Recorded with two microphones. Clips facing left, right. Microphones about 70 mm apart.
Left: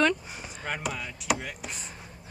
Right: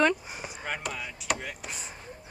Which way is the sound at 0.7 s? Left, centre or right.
Centre.